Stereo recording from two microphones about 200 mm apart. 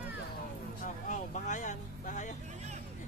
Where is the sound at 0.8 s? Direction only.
40° left (ahead or behind).